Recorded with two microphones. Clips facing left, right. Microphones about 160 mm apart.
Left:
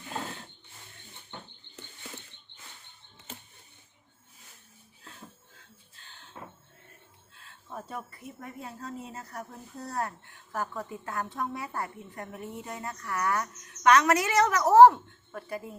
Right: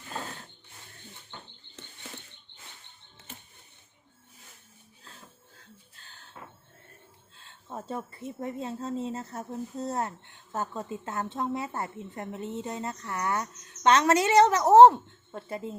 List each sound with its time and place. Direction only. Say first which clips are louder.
7.3 s speech: right 2 dB; 25° right (ahead or behind)